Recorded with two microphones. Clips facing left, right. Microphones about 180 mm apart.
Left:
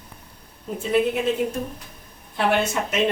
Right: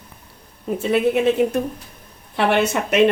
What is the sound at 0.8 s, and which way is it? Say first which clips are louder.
A woman's voice: right 3 dB; 70° right (ahead or behind).